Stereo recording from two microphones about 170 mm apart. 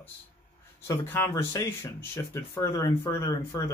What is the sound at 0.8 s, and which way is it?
Speech, 15° left (ahead or behind).